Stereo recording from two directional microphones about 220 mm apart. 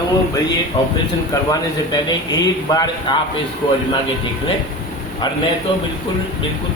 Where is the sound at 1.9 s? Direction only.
20° left (ahead or behind).